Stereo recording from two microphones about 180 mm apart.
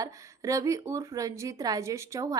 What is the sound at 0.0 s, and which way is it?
A woman's voice, 20° right (ahead or behind).